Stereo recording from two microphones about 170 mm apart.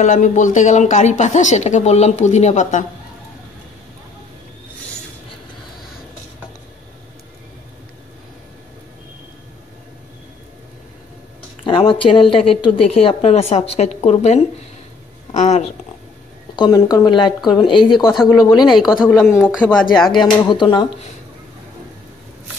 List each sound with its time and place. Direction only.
0.0 s speech: 45° left (ahead or behind)
11.6 s a woman's voice: 30° left (ahead or behind)
16.5 s speech: 25° left (ahead or behind)
19.1 s speech: centre (ahead or behind)
20.1 s speech: 25° left (ahead or behind)